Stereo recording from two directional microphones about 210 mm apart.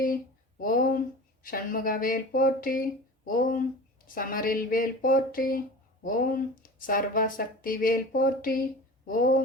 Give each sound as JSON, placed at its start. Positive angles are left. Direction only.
{"t": 0.6, "sound": "speech", "side_deg": 40}